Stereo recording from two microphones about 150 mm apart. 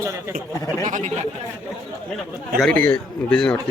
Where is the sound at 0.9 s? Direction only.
55° right (ahead or behind).